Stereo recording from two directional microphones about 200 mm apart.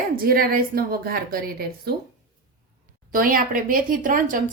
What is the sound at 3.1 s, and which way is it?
A woman's voice, 45° right (ahead or behind).